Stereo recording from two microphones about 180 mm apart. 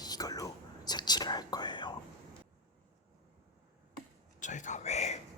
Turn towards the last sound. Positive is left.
turn(degrees=40)  # may be behind; listen again after turning